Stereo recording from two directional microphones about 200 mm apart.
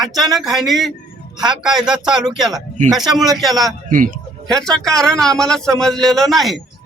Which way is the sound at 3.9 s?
40° right (ahead or behind).